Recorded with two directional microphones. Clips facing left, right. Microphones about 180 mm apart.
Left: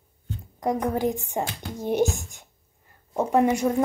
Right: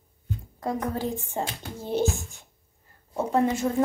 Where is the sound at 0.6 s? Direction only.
15° left (ahead or behind).